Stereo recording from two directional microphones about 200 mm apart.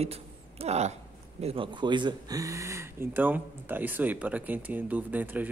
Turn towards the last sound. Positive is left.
turn(degrees=-10)  # may be behind; listen again after turning